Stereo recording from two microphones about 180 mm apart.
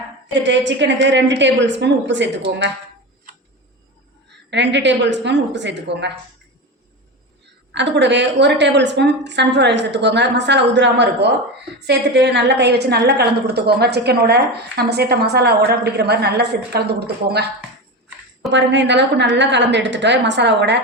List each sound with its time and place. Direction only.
0.3 s a woman's voice: 80° right
4.5 s a woman's voice: 75° right (ahead or behind)
7.7 s a woman's voice: 80° right
18.5 s a woman's voice: 85° right